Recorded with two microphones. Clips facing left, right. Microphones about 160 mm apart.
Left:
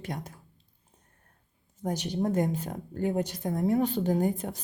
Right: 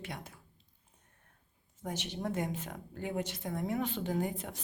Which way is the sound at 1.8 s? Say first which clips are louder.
Left 8 dB; 40° left (ahead or behind).